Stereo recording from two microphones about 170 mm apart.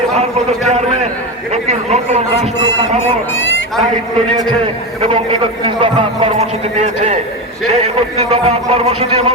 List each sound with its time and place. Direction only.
0.1 s a man's voice: 40° right (ahead or behind)
4.4 s a man's voice: 30° right (ahead or behind)
8.3 s a man's voice: 40° right (ahead or behind)